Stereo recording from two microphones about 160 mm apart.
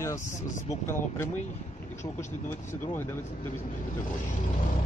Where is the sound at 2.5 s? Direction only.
15° left (ahead or behind).